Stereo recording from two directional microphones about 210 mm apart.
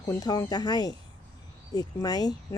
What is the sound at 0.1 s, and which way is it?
Speech, 20° left (ahead or behind).